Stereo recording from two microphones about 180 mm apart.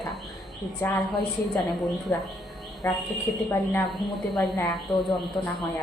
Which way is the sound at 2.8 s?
15° left (ahead or behind).